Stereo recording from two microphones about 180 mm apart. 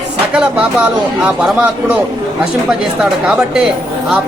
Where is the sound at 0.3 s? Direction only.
5° right (ahead or behind).